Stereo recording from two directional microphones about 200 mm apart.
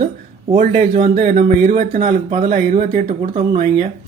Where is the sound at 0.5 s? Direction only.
40° right (ahead or behind).